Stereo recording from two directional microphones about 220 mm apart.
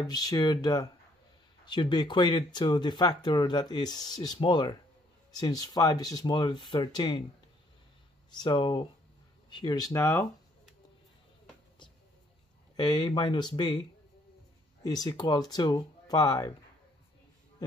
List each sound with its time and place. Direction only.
0.0 s speech: 15° left (ahead or behind)
8.3 s speech: 20° left (ahead or behind)
12.7 s speech: 20° left (ahead or behind)
14.8 s speech: 15° left (ahead or behind)